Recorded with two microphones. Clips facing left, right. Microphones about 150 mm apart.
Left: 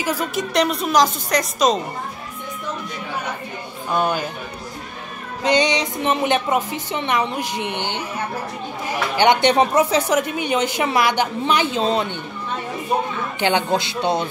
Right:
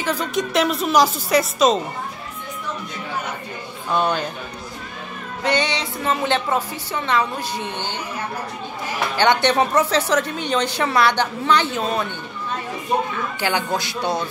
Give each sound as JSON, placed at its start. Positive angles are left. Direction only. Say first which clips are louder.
{"t": 0.0, "sound": "speech", "louder": "even", "side_deg": 10}
{"t": 3.9, "sound": "a woman's voice", "louder": "even", "side_deg": 5}
{"t": 5.4, "sound": "a woman's voice", "louder": "left 3 dB", "side_deg": 20}
{"t": 9.1, "sound": "a woman's voice", "louder": "left 2 dB", "side_deg": 15}
{"t": 13.4, "sound": "speech", "louder": "left 4 dB", "side_deg": 20}